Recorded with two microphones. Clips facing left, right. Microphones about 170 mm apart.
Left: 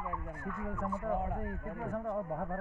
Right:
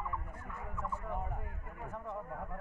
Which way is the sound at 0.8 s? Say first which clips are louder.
Left 6 dB; 50° left (ahead or behind).